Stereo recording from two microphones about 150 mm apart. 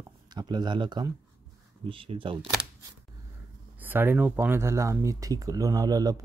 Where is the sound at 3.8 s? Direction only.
15° right (ahead or behind).